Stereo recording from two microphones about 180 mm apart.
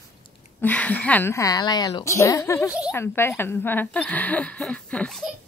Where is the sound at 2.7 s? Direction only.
5° right (ahead or behind).